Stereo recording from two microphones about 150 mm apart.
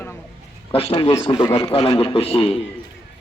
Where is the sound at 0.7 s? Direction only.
40° left (ahead or behind).